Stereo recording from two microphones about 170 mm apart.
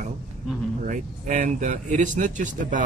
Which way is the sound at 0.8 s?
50° right (ahead or behind).